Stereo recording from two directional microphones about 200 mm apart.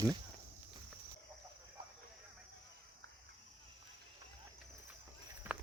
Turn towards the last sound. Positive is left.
turn(degrees=-10)  # may be behind; listen again after turning